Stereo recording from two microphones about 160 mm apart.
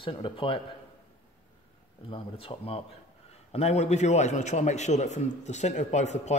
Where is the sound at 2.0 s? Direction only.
35° left (ahead or behind).